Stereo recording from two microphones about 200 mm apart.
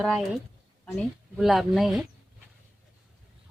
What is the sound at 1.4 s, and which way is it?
Speech, centre (ahead or behind).